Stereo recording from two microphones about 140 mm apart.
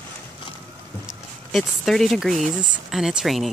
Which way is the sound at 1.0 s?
Centre (ahead or behind).